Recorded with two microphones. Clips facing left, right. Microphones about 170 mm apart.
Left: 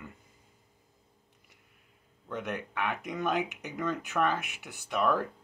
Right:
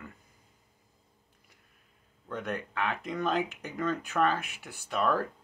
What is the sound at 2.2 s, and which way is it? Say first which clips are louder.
Speech: right 1 dB; 10° left (ahead or behind).